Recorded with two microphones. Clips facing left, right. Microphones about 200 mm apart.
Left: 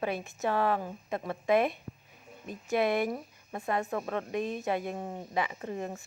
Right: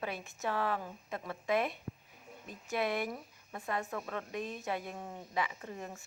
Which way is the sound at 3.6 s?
60° left (ahead or behind).